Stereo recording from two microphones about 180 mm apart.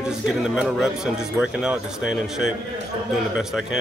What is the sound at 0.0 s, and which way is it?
Speech, 5° right (ahead or behind).